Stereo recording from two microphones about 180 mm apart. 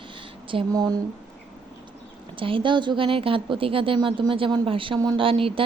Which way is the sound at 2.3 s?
30° right (ahead or behind).